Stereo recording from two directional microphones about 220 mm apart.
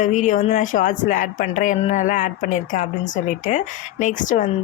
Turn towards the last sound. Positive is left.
turn(degrees=35)  # may be behind; listen again after turning